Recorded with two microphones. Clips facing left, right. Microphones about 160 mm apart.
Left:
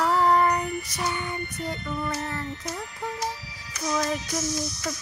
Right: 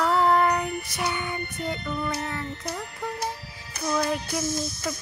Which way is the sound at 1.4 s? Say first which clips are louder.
Right 1 dB; 60° right (ahead or behind).